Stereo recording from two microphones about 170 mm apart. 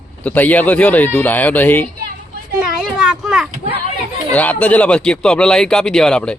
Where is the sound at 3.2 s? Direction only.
5° right (ahead or behind).